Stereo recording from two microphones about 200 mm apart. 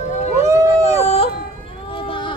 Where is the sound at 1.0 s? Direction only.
30° left (ahead or behind).